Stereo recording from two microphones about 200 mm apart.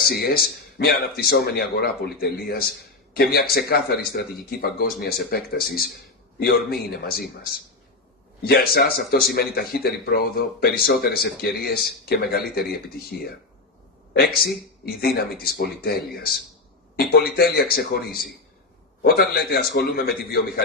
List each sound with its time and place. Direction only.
0.0 s speech: 50° left (ahead or behind)
8.5 s speech: 50° left (ahead or behind)
15.0 s speech: 50° left (ahead or behind)